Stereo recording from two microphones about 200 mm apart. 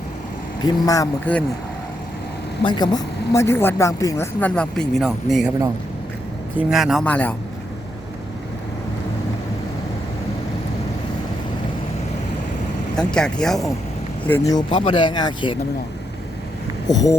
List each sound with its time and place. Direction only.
0.6 s speech: 15° left (ahead or behind)
2.6 s speech: 20° left (ahead or behind); by 5.5 s centre (ahead or behind)
6.6 s speech: 5° right (ahead or behind)
13.0 s speech: 5° left (ahead or behind)
14.3 s speech: 15° left (ahead or behind)
16.9 s speech: 20° left (ahead or behind)